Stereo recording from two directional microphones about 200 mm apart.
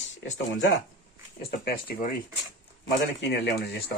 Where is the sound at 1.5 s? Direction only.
45° left (ahead or behind).